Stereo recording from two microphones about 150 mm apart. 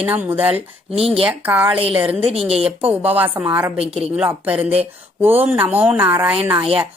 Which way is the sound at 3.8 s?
40° right (ahead or behind).